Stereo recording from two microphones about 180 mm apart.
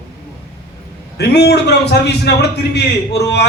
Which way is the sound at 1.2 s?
65° left (ahead or behind).